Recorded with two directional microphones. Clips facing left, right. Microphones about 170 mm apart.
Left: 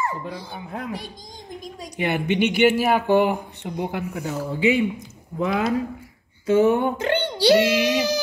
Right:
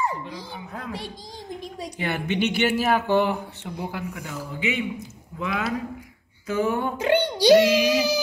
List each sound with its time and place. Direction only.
0.7 s speech: 20° left (ahead or behind)
2.0 s speech: 15° left (ahead or behind)
7.0 s a child's voice: 10° right (ahead or behind)
7.8 s music: 10° right (ahead or behind)